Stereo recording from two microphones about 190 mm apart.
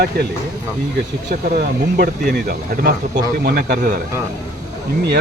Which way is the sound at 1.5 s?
50° right (ahead or behind).